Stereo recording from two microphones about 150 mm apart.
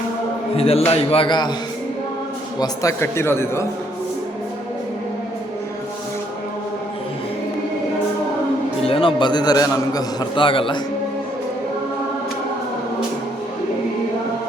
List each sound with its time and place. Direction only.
0.5 s a man's voice: 40° left (ahead or behind)
2.6 s a man's voice: 20° left (ahead or behind)
8.9 s a man's voice: 35° left (ahead or behind)